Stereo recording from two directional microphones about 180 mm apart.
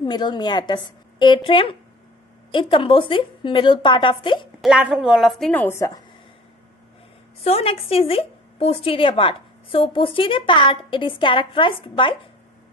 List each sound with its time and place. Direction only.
0.0 s a woman's voice: 25° left (ahead or behind)
4.6 s a woman's voice: 5° right (ahead or behind); by 6.0 s 15° left (ahead or behind)
7.4 s a woman's voice: 35° left (ahead or behind)